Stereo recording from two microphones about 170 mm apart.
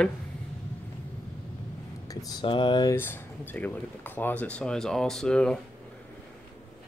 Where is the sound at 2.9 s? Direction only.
15° left (ahead or behind).